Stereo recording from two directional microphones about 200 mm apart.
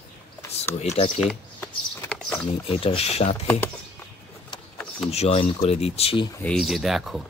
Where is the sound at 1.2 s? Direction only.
5° left (ahead or behind).